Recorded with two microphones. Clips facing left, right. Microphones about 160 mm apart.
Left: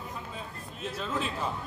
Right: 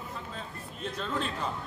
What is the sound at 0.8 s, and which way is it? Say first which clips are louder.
Speech: even; 5° left (ahead or behind).